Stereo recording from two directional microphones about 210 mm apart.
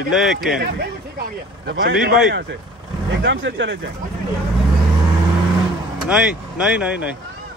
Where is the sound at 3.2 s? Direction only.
60° right (ahead or behind).